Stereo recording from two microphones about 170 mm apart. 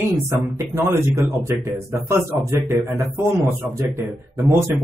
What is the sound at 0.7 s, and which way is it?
A man's voice, 15° right (ahead or behind).